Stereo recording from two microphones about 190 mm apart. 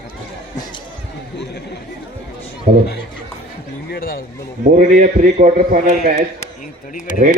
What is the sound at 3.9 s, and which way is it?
Speech, 50° left (ahead or behind).